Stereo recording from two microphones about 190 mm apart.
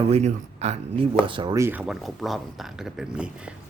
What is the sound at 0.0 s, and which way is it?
Speech, 35° right (ahead or behind).